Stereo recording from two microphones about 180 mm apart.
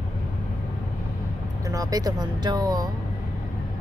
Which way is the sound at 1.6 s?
20° right (ahead or behind).